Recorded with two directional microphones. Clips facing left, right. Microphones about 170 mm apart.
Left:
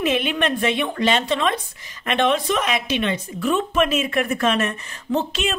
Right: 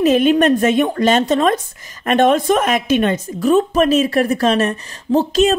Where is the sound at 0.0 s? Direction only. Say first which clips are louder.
Right 9 dB; 40° right (ahead or behind).